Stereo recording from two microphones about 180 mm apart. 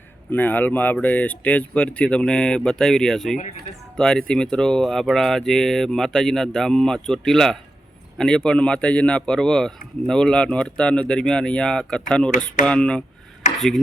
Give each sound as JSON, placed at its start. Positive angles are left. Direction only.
{"t": 0.3, "sound": "speech", "side_deg": 10}